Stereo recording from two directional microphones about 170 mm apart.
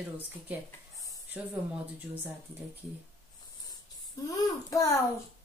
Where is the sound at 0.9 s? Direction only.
20° left (ahead or behind).